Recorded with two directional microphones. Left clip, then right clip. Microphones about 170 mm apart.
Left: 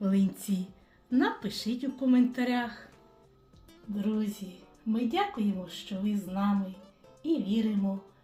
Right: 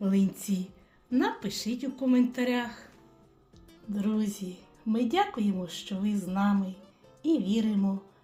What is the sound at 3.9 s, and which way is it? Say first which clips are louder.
A woman's voice: right 1 dB; 55° right (ahead or behind).